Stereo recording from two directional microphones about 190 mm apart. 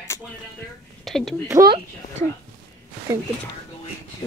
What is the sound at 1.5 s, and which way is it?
Speech, 20° right (ahead or behind).